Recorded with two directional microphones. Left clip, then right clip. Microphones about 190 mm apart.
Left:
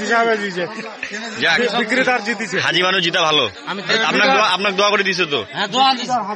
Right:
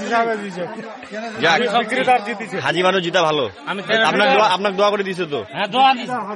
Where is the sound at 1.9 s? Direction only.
45° left (ahead or behind).